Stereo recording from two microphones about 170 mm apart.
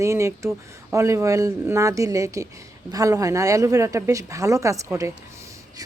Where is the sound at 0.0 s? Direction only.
15° right (ahead or behind).